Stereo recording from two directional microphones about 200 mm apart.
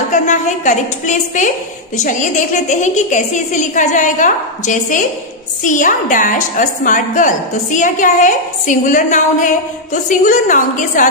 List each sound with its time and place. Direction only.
0.1 s a woman's voice: 40° left (ahead or behind)